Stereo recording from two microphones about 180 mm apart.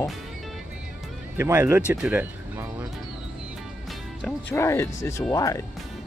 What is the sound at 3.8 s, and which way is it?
Music, centre (ahead or behind).